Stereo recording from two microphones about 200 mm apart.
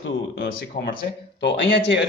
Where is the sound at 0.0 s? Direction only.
70° left (ahead or behind).